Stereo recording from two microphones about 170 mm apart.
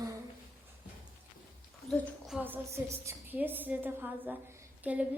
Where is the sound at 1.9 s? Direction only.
5° right (ahead or behind).